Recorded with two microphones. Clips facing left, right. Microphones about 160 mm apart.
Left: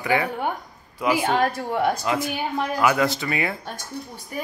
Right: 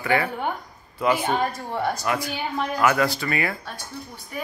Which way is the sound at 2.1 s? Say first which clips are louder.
Left 2 dB; 20° left (ahead or behind).